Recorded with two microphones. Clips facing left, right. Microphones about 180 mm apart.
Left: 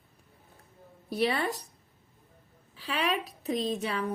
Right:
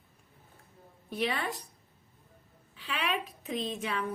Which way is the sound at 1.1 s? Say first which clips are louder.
Left 4 dB; 35° left (ahead or behind).